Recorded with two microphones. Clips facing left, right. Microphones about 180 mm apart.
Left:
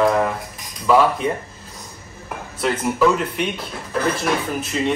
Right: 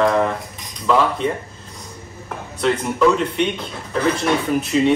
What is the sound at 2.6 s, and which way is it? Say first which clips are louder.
Speech: right 1 dB; 5° left (ahead or behind).